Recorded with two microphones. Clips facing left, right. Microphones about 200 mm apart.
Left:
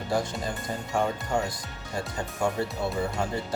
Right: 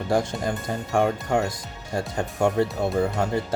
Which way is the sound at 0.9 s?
60° right (ahead or behind).